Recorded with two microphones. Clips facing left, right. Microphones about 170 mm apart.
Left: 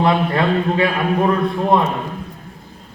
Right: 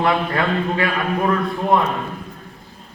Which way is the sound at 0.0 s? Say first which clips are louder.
Left 3 dB; 25° left (ahead or behind).